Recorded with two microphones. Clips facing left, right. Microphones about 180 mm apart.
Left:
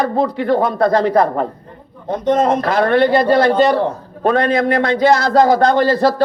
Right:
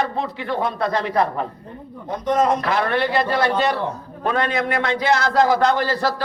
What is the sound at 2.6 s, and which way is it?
A man's voice, 40° left (ahead or behind).